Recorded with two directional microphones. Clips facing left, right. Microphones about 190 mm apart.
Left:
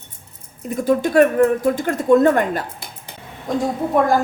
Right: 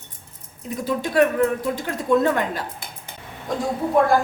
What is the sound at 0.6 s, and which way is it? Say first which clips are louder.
A woman's voice: left 7 dB; 50° left (ahead or behind).